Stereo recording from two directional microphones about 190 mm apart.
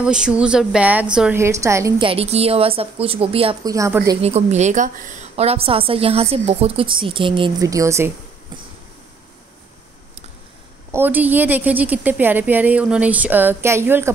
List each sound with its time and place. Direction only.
0.0 s a woman's voice: 5° right (ahead or behind)
2.0 s a woman's voice: 30° right (ahead or behind)
3.6 s a woman's voice: 15° right (ahead or behind)
4.2 s a woman's voice: 35° right (ahead or behind); by 8.1 s 15° right (ahead or behind)
10.9 s a woman's voice: 10° right (ahead or behind)